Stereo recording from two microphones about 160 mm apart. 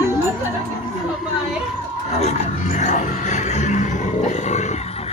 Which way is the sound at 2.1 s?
45° left (ahead or behind).